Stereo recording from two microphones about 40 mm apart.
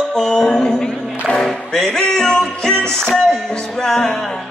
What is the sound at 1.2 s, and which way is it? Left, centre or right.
Music, centre.